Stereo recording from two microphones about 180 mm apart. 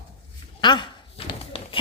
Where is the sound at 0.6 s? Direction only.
25° left (ahead or behind).